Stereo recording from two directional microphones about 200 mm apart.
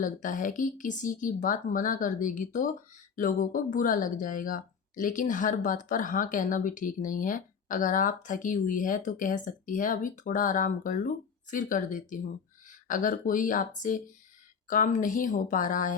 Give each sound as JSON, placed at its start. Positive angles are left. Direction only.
{"t": 0.0, "sound": "speech", "side_deg": 40}